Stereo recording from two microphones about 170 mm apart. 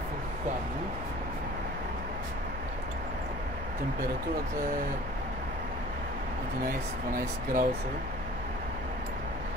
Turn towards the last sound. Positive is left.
turn(degrees=-55)  # may be behind; listen again after turning